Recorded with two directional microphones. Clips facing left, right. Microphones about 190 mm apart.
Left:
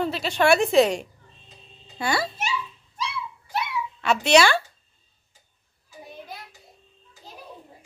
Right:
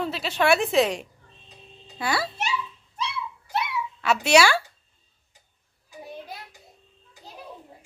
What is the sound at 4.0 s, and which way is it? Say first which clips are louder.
Speech: left 1 dB; 5° right (ahead or behind).